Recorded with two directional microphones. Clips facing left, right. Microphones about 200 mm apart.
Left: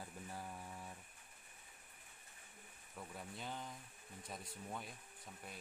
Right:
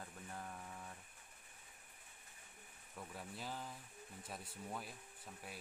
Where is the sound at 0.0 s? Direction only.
10° left (ahead or behind).